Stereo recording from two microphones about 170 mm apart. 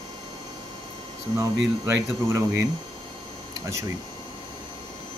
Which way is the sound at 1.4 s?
20° right (ahead or behind).